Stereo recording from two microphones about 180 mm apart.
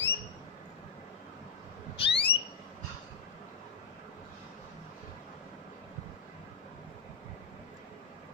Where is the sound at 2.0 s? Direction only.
30° left (ahead or behind).